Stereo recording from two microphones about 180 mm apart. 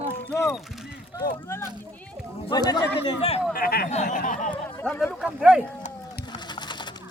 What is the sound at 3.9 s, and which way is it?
Speech, 40° left (ahead or behind).